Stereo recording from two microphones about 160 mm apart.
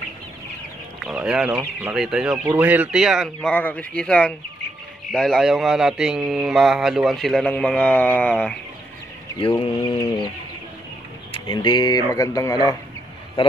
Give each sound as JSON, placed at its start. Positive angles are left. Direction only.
{"t": 1.0, "sound": "speech", "side_deg": -5}
{"t": 9.4, "sound": "bird", "side_deg": 35}
{"t": 11.4, "sound": "speech", "side_deg": 25}
{"t": 13.4, "sound": "a man's voice", "side_deg": 35}